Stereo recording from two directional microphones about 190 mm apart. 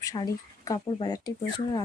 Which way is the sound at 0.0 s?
20° left (ahead or behind).